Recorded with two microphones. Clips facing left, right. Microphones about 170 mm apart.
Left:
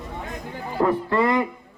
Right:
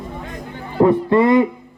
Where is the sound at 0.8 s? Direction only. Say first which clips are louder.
Right 7 dB; 25° right (ahead or behind).